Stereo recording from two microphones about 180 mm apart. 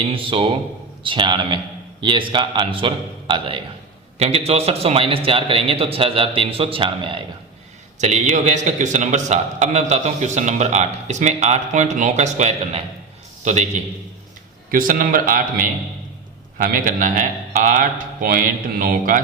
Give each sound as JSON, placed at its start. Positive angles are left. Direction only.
{"t": 0.0, "sound": "a man's voice", "side_deg": -30}
{"t": 7.9, "sound": "a man's voice", "side_deg": -40}
{"t": 14.7, "sound": "a man's voice", "side_deg": -50}